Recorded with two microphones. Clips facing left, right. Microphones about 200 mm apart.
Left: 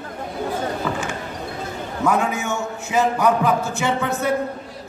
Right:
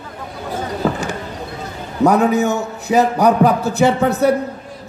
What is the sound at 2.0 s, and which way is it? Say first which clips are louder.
A man's voice: right 8 dB; 40° right (ahead or behind).